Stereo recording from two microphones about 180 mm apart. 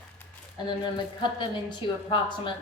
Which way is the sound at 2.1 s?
25° left (ahead or behind).